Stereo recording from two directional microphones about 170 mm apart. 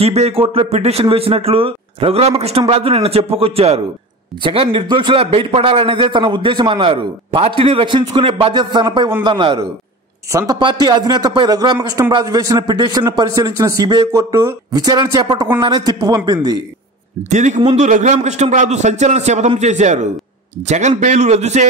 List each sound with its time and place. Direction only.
0.0 s a man's voice: 35° right (ahead or behind)
17.3 s a man's voice: 45° right (ahead or behind)